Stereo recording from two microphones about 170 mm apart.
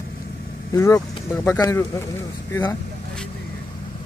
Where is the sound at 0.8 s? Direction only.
20° left (ahead or behind).